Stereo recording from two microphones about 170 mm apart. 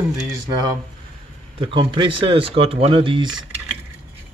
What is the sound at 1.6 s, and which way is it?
Speech, 30° right (ahead or behind).